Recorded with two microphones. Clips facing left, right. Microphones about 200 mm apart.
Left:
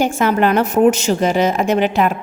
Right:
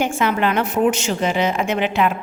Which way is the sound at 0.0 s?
40° left (ahead or behind).